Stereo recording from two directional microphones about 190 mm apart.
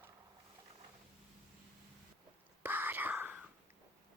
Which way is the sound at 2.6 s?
10° right (ahead or behind).